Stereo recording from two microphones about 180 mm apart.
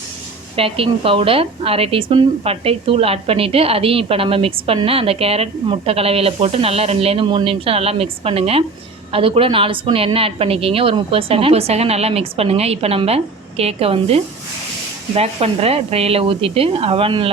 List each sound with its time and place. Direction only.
0.5 s a woman's voice: 30° right (ahead or behind)